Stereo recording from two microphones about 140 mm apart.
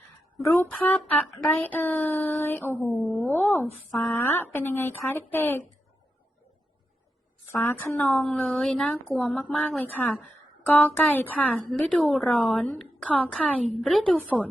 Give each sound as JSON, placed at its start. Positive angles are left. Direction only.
{"t": 0.4, "sound": "a woman's voice", "side_deg": 15}
{"t": 7.5, "sound": "a woman's voice", "side_deg": 15}
{"t": 9.3, "sound": "a woman's voice", "side_deg": 10}